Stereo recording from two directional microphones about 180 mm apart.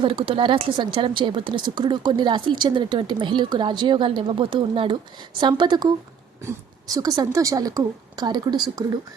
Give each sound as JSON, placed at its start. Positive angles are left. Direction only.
{"t": 0.0, "sound": "a woman's voice", "side_deg": -30}